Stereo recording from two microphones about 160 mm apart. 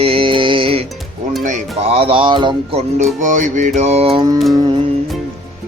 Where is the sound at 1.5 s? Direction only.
40° right (ahead or behind).